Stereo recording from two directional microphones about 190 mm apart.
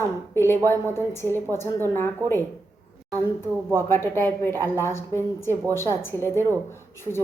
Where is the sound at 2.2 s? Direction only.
15° right (ahead or behind).